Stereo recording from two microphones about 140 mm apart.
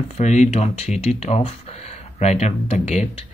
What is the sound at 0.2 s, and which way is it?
Speech, 55° left (ahead or behind).